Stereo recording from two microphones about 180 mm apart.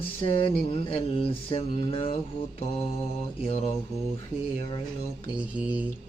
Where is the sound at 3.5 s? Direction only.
35° left (ahead or behind).